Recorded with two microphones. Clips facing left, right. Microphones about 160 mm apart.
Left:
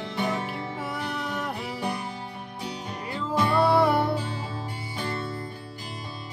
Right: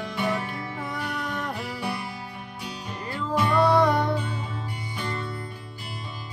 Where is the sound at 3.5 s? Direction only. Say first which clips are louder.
Right 1 dB; 5° left (ahead or behind).